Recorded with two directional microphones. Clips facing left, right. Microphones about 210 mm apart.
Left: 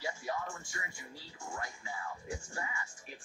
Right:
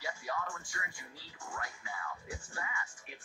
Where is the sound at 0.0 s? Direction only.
25° left (ahead or behind).